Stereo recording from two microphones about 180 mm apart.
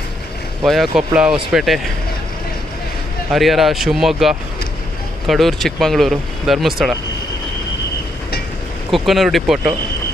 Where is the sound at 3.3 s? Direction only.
Centre (ahead or behind).